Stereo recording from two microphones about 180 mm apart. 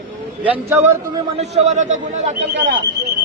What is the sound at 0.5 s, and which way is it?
Speech, 15° right (ahead or behind).